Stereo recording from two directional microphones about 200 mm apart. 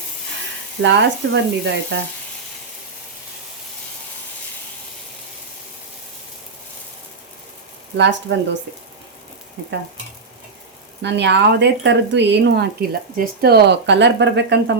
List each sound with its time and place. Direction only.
0.8 s speech: 60° right (ahead or behind)
7.9 s speech: 65° right (ahead or behind)
11.0 s speech: 60° right (ahead or behind)